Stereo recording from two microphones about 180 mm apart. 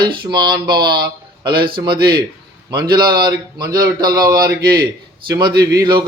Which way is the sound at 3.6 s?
20° right (ahead or behind).